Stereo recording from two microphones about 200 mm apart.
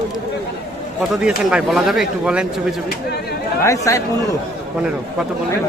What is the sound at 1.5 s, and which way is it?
Speech, 5° right (ahead or behind).